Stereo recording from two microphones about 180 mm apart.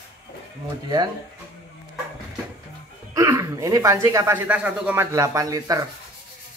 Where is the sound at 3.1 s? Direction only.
15° right (ahead or behind).